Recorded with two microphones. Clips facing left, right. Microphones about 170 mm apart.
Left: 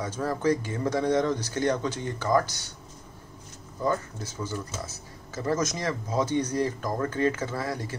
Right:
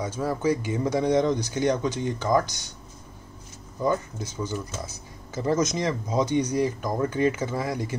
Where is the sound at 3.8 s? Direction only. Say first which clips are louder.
Right 2 dB; 15° right (ahead or behind).